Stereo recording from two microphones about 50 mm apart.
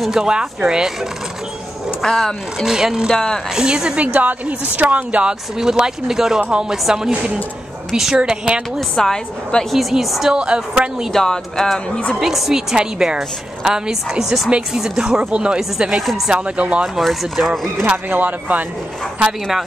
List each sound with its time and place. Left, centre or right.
0.1 s speech: centre
2.0 s speech: centre
2.6 s speech: centre
4.0 s a woman's voice: right
5.6 s speech: centre
8.7 s a woman's voice: centre
9.7 s a woman's voice: centre
10.3 s a woman's voice: centre
11.1 s a woman's voice: centre
12.2 s a woman's voice: centre
12.7 s a woman's voice: centre
17.0 s a woman's voice: centre
18.1 s a woman's voice: right